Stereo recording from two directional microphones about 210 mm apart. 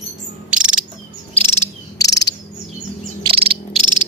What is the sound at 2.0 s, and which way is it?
Bird, 15° left (ahead or behind).